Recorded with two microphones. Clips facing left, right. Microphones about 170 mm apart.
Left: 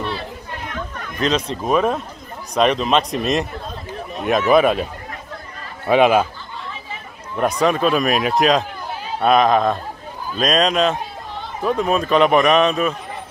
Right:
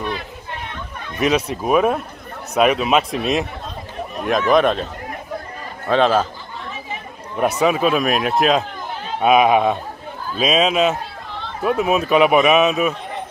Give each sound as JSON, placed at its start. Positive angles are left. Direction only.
{"t": 1.2, "sound": "a man's voice", "side_deg": -10}
{"t": 5.9, "sound": "speech", "side_deg": 10}
{"t": 7.3, "sound": "a man's voice", "side_deg": -5}